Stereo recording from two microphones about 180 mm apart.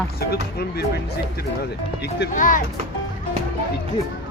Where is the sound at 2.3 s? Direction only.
45° left (ahead or behind).